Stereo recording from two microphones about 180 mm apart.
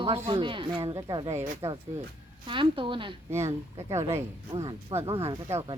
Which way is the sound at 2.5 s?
25° right (ahead or behind).